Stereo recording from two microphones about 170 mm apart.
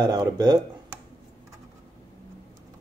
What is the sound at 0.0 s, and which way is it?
Speech, 25° right (ahead or behind).